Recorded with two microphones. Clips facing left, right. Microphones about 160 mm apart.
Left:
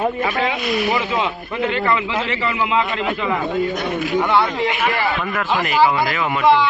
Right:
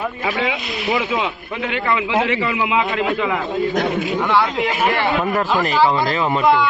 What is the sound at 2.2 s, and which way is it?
Speech, 15° right (ahead or behind).